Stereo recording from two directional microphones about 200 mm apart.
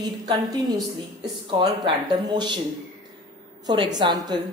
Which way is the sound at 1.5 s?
20° right (ahead or behind).